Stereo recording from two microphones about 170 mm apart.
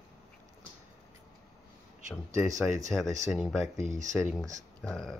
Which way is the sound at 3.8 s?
45° right (ahead or behind).